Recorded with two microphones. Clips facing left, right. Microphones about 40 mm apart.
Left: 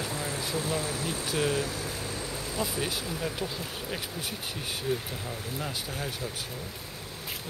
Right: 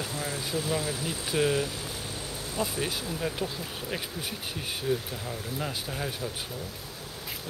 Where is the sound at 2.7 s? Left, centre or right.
Centre.